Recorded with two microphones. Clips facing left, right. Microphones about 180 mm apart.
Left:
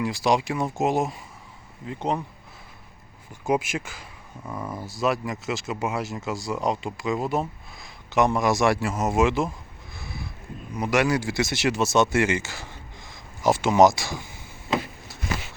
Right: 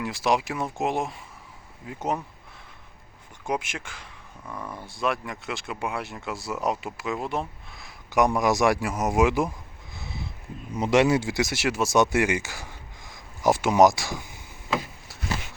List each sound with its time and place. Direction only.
0.0 s speech: centre (ahead or behind)
3.4 s speech: 5° left (ahead or behind)
4.4 s speech: 20° left (ahead or behind)
4.7 s speech: 5° left (ahead or behind)
8.1 s speech: 15° right (ahead or behind)
9.9 s a sound: 20° right (ahead or behind)
10.8 s speech: 25° right (ahead or behind); by 14.2 s 5° right (ahead or behind)